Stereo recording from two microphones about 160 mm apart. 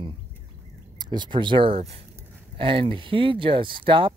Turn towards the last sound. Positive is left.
turn(degrees=-30)  # may be behind; listen again after turning